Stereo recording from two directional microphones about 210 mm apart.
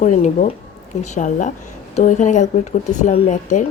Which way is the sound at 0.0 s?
35° left (ahead or behind).